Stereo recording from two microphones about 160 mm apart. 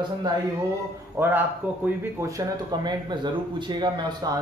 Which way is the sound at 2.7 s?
25° right (ahead or behind).